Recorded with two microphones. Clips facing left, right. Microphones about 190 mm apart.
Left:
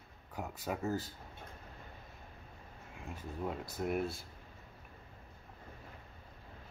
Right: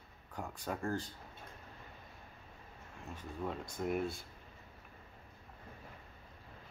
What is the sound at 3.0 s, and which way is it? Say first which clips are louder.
Speech: left 1 dB; 5° left (ahead or behind).